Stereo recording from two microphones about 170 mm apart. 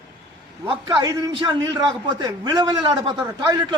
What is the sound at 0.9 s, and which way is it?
A man's voice, 20° right (ahead or behind).